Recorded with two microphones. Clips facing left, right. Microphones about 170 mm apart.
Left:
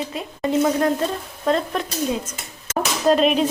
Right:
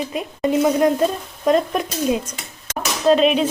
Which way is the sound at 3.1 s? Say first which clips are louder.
Right 2 dB; centre (ahead or behind).